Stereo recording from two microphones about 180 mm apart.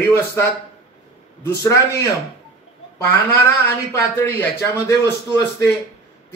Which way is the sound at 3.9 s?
15° left (ahead or behind).